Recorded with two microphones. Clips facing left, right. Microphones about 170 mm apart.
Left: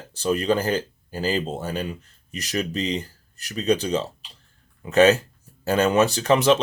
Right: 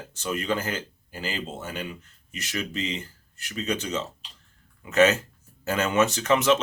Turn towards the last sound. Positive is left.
turn(degrees=35)  # may be behind; listen again after turning